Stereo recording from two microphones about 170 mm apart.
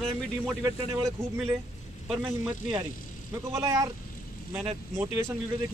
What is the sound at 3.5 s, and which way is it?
Speech, 20° right (ahead or behind).